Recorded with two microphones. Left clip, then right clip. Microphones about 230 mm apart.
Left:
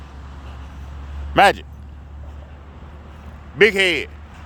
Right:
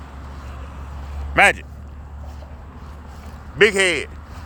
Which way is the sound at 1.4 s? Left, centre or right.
Left.